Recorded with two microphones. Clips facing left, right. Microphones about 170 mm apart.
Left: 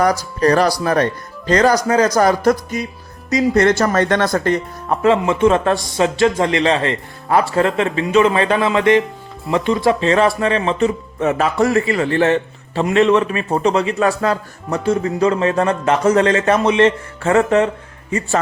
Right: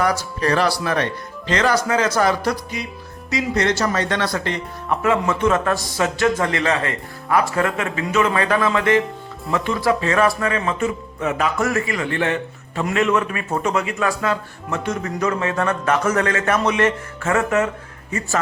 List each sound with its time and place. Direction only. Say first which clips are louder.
0.0 s speech: left 5 dB; 40° left (ahead or behind)
5.0 s a man's voice: left 5 dB; 30° left (ahead or behind)